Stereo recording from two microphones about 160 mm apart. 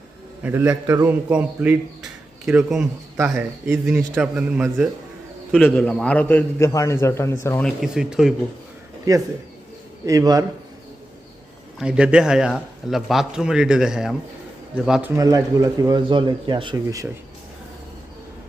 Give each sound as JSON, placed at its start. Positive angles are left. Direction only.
{"t": 0.4, "sound": "speech", "side_deg": -10}
{"t": 0.7, "sound": "speech", "side_deg": -25}
{"t": 1.0, "sound": "speech", "side_deg": -10}
{"t": 3.8, "sound": "speech", "side_deg": -5}
{"t": 5.5, "sound": "a man's voice", "side_deg": 5}
{"t": 7.6, "sound": "speech", "side_deg": 0}
{"t": 10.1, "sound": "speech", "side_deg": -20}
{"t": 11.8, "sound": "speech", "side_deg": -5}
{"t": 15.1, "sound": "speech", "side_deg": -20}